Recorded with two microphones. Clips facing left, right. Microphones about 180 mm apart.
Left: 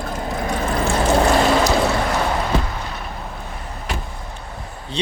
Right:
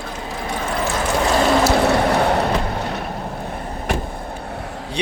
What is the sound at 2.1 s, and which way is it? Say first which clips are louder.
Vehicle: right 3 dB; 60° right (ahead or behind).